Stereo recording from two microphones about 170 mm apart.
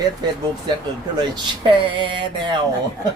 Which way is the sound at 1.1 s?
25° right (ahead or behind).